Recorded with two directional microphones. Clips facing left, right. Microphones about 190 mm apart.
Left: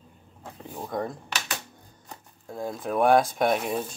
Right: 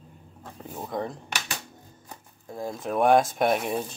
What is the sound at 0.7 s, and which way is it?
Speech, centre (ahead or behind).